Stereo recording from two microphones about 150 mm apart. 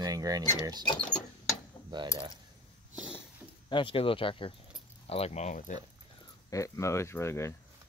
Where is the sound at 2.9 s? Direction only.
5° right (ahead or behind).